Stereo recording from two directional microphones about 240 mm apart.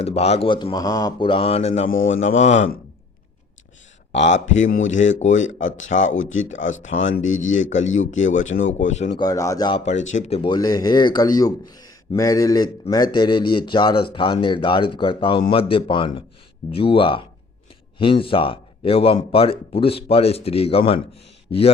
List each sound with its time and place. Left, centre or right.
0.0 s a man's voice: left
4.4 s a man's voice: left